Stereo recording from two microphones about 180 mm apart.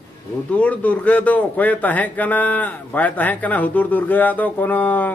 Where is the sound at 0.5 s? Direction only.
10° left (ahead or behind).